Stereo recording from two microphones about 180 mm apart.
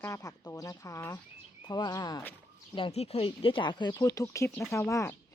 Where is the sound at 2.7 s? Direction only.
30° left (ahead or behind).